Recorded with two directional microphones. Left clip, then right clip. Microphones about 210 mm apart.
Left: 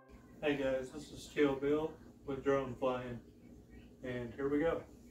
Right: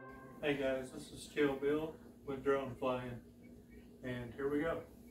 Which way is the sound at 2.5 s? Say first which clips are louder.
Left 2 dB; centre (ahead or behind).